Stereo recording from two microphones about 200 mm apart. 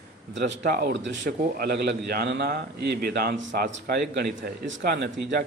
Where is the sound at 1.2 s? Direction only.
50° right (ahead or behind).